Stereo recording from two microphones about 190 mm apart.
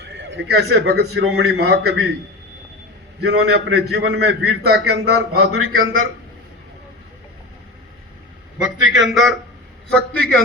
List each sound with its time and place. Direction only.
0.0 s a man's voice: 60° right (ahead or behind)
3.2 s a man's voice: 60° right (ahead or behind); by 5.9 s 90° right
8.5 s a man's voice: 5° right (ahead or behind)